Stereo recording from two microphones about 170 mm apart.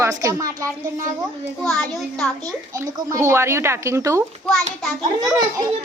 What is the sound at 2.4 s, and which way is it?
Speech, 20° right (ahead or behind).